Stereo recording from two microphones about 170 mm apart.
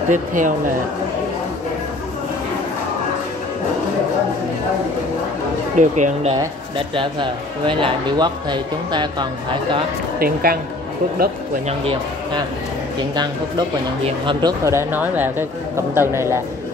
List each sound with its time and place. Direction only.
0.1 s speech: 50° right (ahead or behind)
5.8 s speech: 45° right (ahead or behind)
7.0 s speech: 30° right (ahead or behind)
10.1 s a woman's voice: 60° right (ahead or behind)
13.1 s a man's voice: 25° right (ahead or behind)